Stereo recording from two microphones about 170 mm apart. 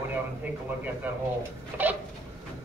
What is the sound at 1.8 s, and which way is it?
Speech, 10° right (ahead or behind).